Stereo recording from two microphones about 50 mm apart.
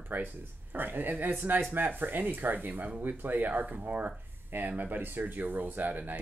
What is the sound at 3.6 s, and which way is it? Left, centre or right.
Speech, right.